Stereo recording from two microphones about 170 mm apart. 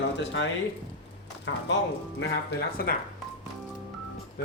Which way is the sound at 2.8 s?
65° left (ahead or behind).